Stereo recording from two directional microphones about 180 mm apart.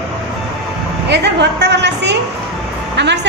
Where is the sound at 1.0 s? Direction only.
70° right (ahead or behind).